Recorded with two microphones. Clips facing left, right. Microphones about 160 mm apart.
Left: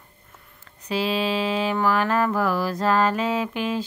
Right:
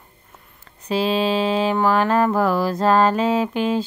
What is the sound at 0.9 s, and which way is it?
Mantra, 30° right (ahead or behind).